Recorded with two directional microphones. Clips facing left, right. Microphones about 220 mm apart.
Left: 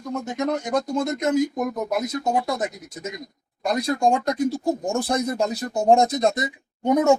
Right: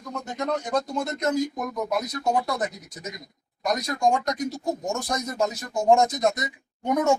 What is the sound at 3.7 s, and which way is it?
Speech, 30° left (ahead or behind).